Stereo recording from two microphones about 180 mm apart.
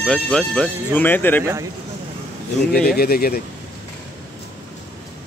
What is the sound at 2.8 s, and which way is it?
Speech, 60° left (ahead or behind).